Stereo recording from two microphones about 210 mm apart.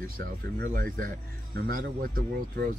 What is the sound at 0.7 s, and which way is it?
Speech, 40° right (ahead or behind).